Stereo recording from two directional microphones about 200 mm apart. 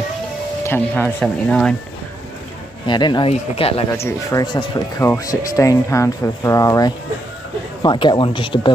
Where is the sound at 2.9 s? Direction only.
20° left (ahead or behind).